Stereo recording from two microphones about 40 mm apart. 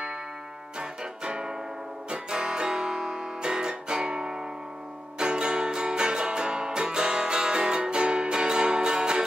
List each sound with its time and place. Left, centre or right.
0.7 s music: right
2.0 s guitar: centre
5.2 s music: right